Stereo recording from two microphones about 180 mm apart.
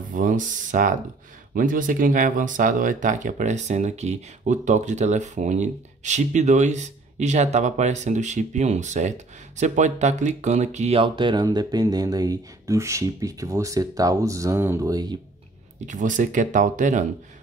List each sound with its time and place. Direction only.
0.1 s speech: 45° right (ahead or behind); by 15.1 s 20° right (ahead or behind)
15.9 s speech: 45° right (ahead or behind)